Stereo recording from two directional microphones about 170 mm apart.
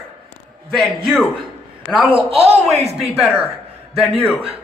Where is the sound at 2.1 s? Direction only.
35° right (ahead or behind).